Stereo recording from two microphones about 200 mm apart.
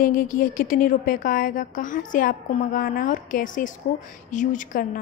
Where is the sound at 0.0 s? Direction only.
45° left (ahead or behind).